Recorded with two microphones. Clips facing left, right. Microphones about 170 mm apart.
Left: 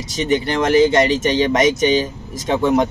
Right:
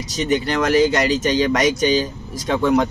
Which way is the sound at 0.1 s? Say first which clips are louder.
Left 1 dB; 25° left (ahead or behind).